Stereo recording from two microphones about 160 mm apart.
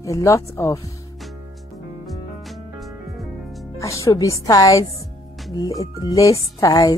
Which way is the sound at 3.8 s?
20° left (ahead or behind).